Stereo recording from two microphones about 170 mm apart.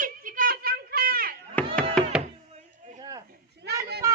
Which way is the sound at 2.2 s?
45° right (ahead or behind).